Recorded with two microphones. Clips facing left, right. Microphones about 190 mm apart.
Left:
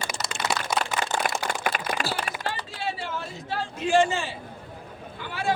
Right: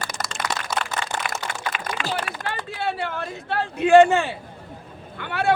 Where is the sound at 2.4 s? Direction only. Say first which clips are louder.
Right 4 dB; 55° right (ahead or behind).